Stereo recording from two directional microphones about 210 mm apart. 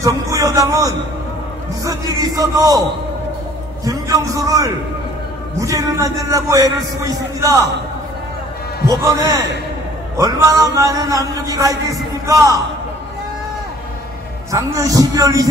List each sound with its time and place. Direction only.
0.0 s a man's voice: 15° right (ahead or behind)
3.8 s a man's voice: 15° right (ahead or behind)
8.8 s a man's voice: 20° right (ahead or behind)
14.5 s a man's voice: 15° right (ahead or behind)